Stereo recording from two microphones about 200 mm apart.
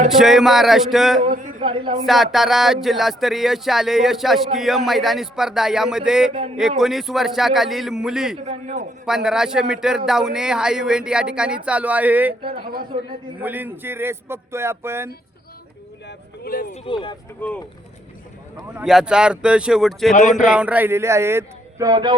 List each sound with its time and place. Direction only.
0.2 s speech: centre (ahead or behind)
1.2 s a man's voice: 35° right (ahead or behind)
2.0 s speech: centre (ahead or behind)
8.4 s a man's voice: 35° right (ahead or behind)
9.0 s speech: centre (ahead or behind)
12.6 s speech: 50° right (ahead or behind)
13.4 s speech: 10° right (ahead or behind)
16.0 s speech: 50° left (ahead or behind)
16.7 s speech: 25° left (ahead or behind)
18.8 s speech: 5° right (ahead or behind); by 22.1 s 20° right (ahead or behind)